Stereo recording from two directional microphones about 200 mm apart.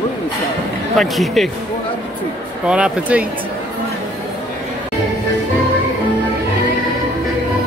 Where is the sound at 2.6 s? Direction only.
5° right (ahead or behind).